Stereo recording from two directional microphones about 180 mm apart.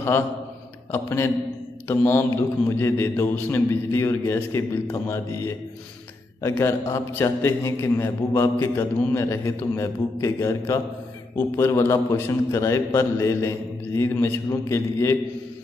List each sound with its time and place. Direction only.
0.9 s a man's voice: 15° left (ahead or behind)